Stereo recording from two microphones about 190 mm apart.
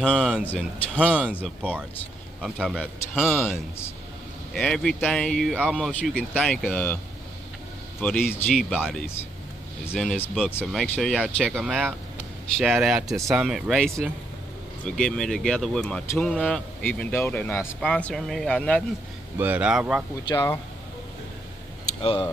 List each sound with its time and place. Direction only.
0.0 s speech: 5° left (ahead or behind)
2.4 s speech: 5° right (ahead or behind)
2.8 s speech: 10° left (ahead or behind)
8.3 s speech: centre (ahead or behind)
19.3 s speech: 10° right (ahead or behind)
20.2 s speech: 20° left (ahead or behind)
22.0 s speech: 25° left (ahead or behind)